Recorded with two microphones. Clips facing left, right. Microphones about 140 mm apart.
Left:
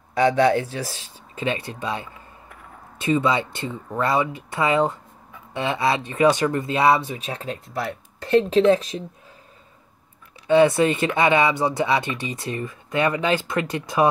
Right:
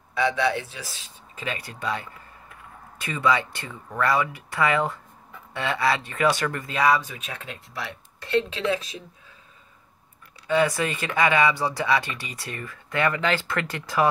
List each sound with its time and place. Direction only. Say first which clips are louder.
0.1 s speech: left 6 dB; 40° left (ahead or behind)
1.4 s speech: left 5 dB; 25° left (ahead or behind); by 8.7 s 40° left (ahead or behind)
10.4 s speech: left 7 dB; 25° left (ahead or behind)